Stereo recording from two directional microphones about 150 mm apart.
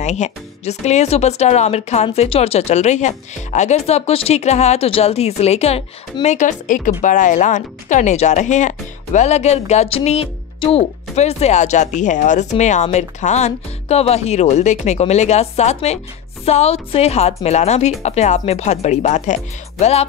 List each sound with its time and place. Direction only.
0.0 s speech: 50° left (ahead or behind)